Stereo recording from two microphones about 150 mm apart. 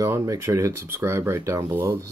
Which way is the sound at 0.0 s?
20° right (ahead or behind).